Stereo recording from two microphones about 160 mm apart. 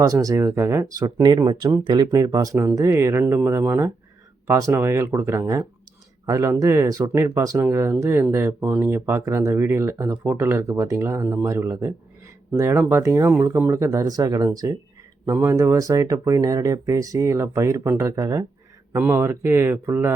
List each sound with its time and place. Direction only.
0.0 s speech: 20° right (ahead or behind)